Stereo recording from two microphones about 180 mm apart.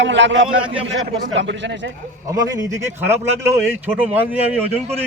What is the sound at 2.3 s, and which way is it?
A man's voice, 20° right (ahead or behind).